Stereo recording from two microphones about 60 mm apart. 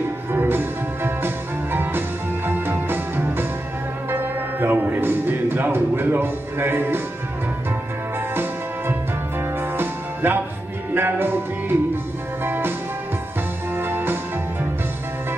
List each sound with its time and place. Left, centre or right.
0.3 s music: right
9.4 s music: right
12.4 s music: right
13.7 s music: right